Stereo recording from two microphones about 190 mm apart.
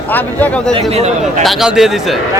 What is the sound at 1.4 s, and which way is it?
Speech, centre (ahead or behind).